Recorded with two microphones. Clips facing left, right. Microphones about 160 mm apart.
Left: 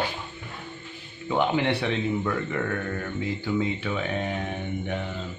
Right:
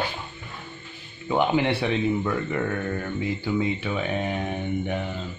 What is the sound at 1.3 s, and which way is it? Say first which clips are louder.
Speech: right 2 dB; 10° right (ahead or behind).